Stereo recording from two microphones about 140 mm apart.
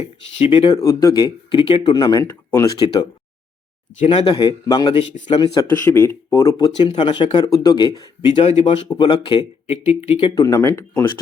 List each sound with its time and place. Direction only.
0.4 s speech: 35° left (ahead or behind)
0.8 s speech: 20° left (ahead or behind)
2.2 s speech: 15° left (ahead or behind)
2.7 s speech: 30° left (ahead or behind)
4.0 s speech: 40° left (ahead or behind)
5.6 s speech: 20° left (ahead or behind)
6.8 s speech: 35° left (ahead or behind)
8.3 s speech: 50° left (ahead or behind)
8.9 s speech: 35° left (ahead or behind)
10.3 s speech: 25° left (ahead or behind)